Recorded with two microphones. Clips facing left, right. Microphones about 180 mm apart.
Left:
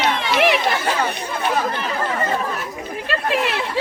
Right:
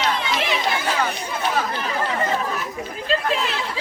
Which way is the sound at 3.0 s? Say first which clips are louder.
Left 1 dB; 65° left (ahead or behind).